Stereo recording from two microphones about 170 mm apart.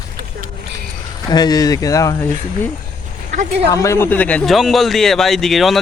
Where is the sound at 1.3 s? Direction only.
25° left (ahead or behind).